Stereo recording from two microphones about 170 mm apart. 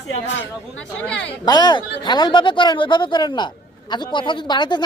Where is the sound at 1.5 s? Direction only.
25° left (ahead or behind).